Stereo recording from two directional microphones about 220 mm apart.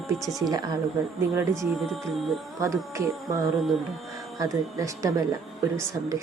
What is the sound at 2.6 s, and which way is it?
Speech, 15° right (ahead or behind).